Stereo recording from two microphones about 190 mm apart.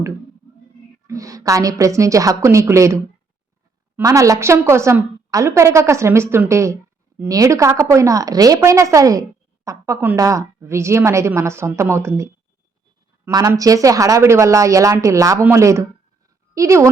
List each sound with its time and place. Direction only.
1.0 s a woman's voice: 15° right (ahead or behind)